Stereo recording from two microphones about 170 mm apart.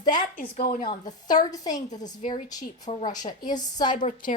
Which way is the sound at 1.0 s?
25° left (ahead or behind).